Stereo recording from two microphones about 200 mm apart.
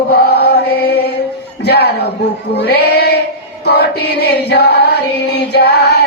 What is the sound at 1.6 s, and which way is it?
Music, 55° left (ahead or behind).